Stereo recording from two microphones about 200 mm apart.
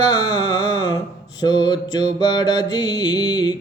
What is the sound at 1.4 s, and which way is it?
Mantra, 20° left (ahead or behind).